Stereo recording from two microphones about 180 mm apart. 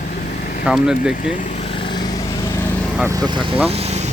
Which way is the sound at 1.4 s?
45° left (ahead or behind).